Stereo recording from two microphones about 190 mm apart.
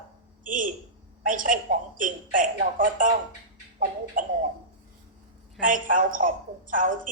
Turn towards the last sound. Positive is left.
turn(degrees=-45)  # may be behind; listen again after turning